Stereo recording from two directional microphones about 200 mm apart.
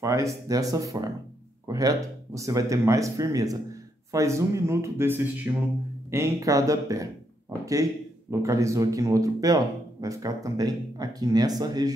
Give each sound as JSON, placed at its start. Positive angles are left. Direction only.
{"t": 0.0, "sound": "speech", "side_deg": -15}